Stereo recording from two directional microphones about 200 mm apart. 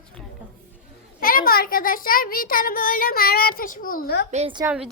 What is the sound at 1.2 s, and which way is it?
A child's voice, 45° left (ahead or behind).